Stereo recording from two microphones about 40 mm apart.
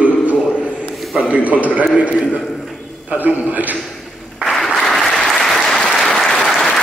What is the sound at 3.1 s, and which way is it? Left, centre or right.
Speech, right.